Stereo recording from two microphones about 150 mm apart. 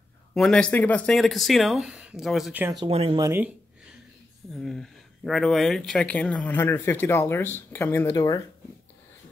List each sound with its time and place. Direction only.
0.3 s speech: 5° left (ahead or behind)
2.9 s speech: 40° right (ahead or behind)
3.2 s speech: 20° right (ahead or behind)
4.6 s speech: centre (ahead or behind); by 8.4 s 20° left (ahead or behind)